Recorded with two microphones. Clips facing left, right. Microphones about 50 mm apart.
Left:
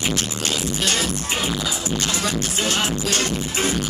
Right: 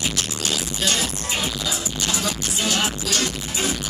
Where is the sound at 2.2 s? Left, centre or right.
Left.